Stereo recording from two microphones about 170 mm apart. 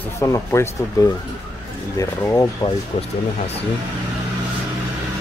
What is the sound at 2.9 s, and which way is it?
Speech, 30° left (ahead or behind).